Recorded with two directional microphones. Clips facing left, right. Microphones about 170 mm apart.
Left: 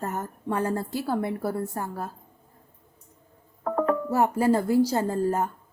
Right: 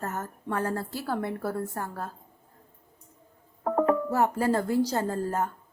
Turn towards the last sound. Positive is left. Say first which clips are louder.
# left 3 dB
turn(degrees=15)  # may be behind; listen again after turning